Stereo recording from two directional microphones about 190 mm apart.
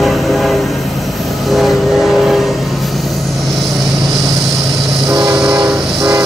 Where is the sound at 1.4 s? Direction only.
Centre (ahead or behind).